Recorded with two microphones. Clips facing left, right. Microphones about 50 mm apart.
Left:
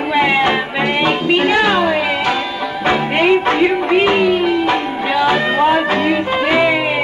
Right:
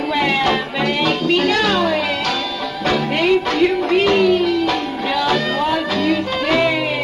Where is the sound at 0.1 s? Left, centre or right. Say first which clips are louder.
Left 4 dB; left.